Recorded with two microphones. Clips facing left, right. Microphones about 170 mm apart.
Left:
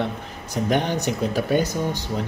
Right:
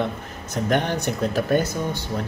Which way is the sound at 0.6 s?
10° left (ahead or behind).